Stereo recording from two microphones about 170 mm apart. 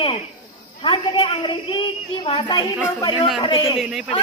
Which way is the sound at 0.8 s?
30° left (ahead or behind).